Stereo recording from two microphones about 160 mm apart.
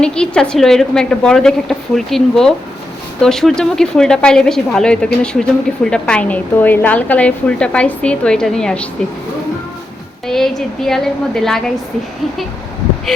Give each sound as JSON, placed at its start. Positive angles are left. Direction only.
{"t": 0.0, "sound": "a woman's voice", "side_deg": 5}
{"t": 10.2, "sound": "a woman's voice", "side_deg": 0}